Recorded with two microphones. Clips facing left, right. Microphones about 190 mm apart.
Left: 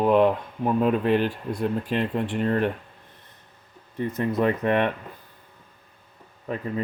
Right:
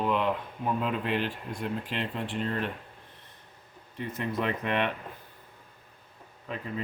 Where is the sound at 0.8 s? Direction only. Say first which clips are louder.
Left 11 dB; 45° left (ahead or behind).